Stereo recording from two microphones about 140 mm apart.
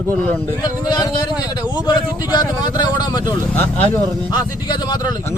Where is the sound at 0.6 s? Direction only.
30° left (ahead or behind).